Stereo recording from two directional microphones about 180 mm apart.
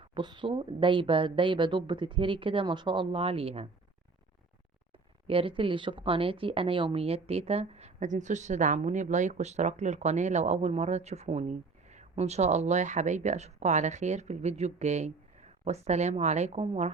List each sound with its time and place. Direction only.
0.1 s speech: 25° right (ahead or behind)
5.3 s speech: 30° right (ahead or behind)